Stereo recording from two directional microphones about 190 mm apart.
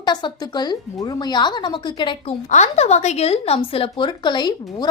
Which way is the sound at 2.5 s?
35° left (ahead or behind).